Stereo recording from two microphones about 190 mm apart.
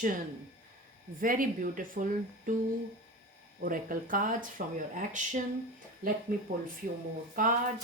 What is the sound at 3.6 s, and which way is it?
Speech, 45° right (ahead or behind).